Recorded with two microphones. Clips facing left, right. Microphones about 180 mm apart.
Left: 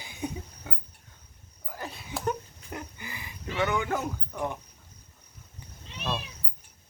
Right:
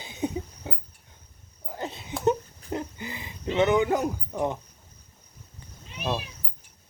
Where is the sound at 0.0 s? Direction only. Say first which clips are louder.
Right 5 dB; 20° right (ahead or behind).